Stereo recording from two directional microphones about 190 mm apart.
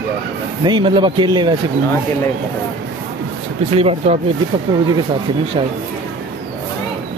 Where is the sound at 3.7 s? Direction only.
30° right (ahead or behind).